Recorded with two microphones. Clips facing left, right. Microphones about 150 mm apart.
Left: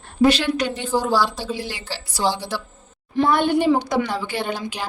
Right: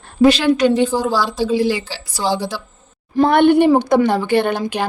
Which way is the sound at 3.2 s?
60° right (ahead or behind).